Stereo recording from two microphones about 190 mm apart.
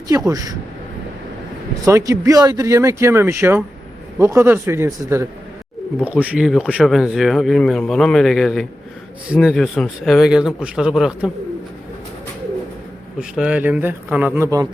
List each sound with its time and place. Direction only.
0.1 s speech: 20° right (ahead or behind)
1.8 s speech: 15° right (ahead or behind)
13.1 s speech: 5° right (ahead or behind)